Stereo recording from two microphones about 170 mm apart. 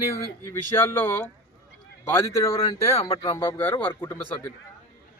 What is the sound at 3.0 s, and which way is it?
Speech, 35° left (ahead or behind).